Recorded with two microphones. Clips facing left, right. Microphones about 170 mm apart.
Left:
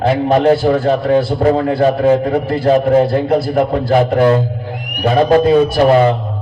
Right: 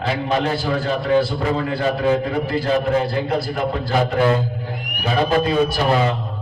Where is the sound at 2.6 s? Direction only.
55° left (ahead or behind).